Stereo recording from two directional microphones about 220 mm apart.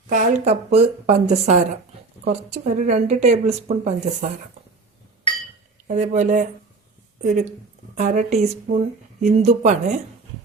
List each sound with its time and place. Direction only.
0.1 s speech: 35° right (ahead or behind)
5.9 s speech: 35° right (ahead or behind)